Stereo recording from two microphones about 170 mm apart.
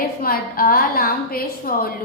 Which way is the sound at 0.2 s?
60° left (ahead or behind).